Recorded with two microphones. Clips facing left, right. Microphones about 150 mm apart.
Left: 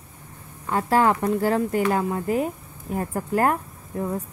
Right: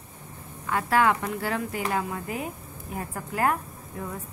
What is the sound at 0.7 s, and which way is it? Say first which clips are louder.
Speech: left 3 dB; 35° left (ahead or behind).